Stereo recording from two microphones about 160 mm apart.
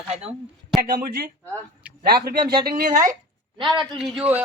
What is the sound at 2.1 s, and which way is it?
A woman's voice, 75° right (ahead or behind).